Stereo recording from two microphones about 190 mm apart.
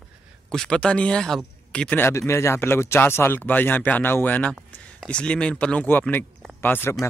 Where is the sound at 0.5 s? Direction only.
5° left (ahead or behind).